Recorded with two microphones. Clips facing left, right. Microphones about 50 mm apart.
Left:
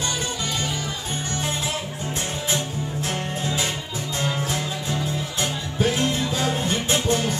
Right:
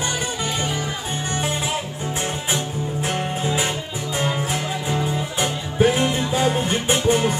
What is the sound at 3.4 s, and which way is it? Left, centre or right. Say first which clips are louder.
Music: right 3 dB; right.